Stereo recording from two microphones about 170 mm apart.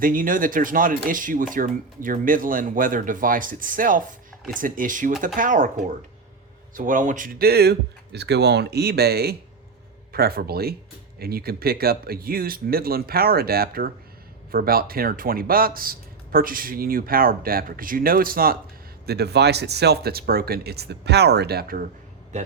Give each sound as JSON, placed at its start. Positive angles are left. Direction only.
{"t": 0.0, "sound": "speech", "side_deg": -55}
{"t": 19.0, "sound": "speech", "side_deg": -75}